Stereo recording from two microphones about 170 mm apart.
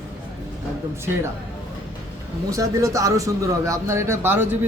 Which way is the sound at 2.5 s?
20° right (ahead or behind).